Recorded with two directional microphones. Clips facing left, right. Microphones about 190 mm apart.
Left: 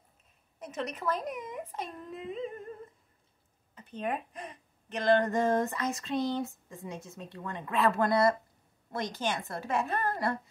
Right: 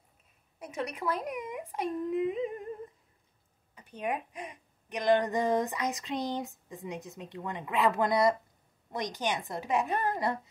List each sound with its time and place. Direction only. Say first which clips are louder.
0.6 s a woman's voice: right 1 dB; 10° right (ahead or behind)
3.7 s a woman's voice: even; 10° right (ahead or behind)